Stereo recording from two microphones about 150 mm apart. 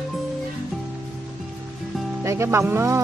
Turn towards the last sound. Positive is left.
turn(degrees=-15)  # may be behind; listen again after turning